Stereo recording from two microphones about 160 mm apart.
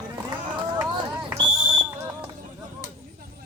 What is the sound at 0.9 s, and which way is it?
Smoke detector, 25° right (ahead or behind).